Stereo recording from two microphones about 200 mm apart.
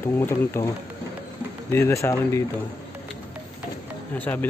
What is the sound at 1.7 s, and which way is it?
Speech, 15° left (ahead or behind).